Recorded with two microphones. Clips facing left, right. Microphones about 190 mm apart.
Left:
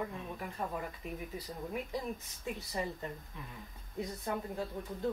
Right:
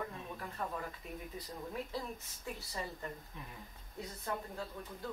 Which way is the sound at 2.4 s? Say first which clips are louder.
Left 5 dB; 20° left (ahead or behind).